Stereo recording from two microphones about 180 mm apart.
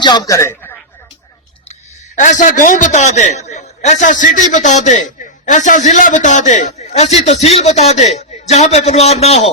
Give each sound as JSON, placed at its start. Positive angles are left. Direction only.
{"t": 0.0, "sound": "speech", "side_deg": 25}
{"t": 2.1, "sound": "a man's voice", "side_deg": 45}